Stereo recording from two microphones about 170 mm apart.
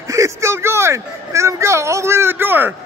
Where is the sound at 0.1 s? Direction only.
15° right (ahead or behind).